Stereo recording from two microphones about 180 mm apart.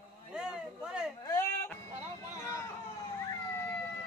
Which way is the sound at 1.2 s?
15° left (ahead or behind).